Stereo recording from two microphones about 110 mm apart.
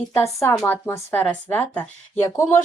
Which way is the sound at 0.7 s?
15° left (ahead or behind).